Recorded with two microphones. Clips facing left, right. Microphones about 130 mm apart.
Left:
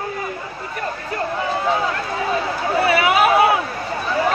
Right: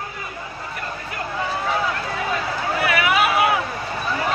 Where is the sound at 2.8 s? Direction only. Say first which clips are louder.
Left 4 dB; 30° left (ahead or behind).